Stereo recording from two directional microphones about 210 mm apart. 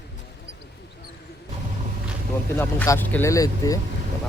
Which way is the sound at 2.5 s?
10° left (ahead or behind).